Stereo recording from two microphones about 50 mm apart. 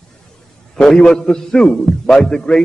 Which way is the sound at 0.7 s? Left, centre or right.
Left.